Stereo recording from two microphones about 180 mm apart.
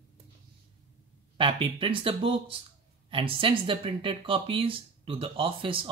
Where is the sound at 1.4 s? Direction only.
30° right (ahead or behind).